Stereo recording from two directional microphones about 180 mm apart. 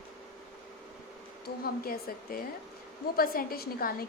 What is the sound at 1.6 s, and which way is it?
A woman's voice, 55° left (ahead or behind).